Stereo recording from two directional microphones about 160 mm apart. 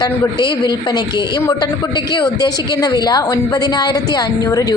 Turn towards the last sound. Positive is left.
turn(degrees=25)  # may be behind; listen again after turning